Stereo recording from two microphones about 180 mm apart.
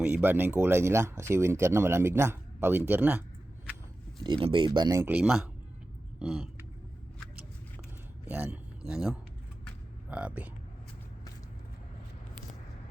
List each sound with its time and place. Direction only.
0.0 s speech: 10° right (ahead or behind)
4.2 s speech: 30° right (ahead or behind); by 6.5 s 5° right (ahead or behind)
8.3 s speech: 10° right (ahead or behind)